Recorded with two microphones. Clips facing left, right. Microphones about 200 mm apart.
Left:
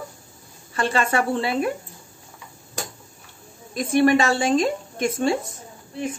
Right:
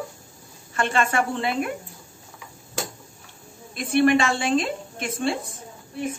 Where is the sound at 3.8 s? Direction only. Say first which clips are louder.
Left 1 dB; 40° left (ahead or behind).